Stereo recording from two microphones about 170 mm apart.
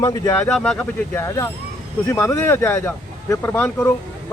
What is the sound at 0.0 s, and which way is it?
Speech, 20° left (ahead or behind).